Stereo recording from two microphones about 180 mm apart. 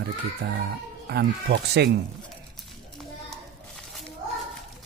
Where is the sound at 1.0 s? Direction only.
65° right (ahead or behind).